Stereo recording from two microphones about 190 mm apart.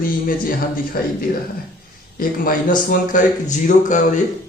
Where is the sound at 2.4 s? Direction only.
45° left (ahead or behind).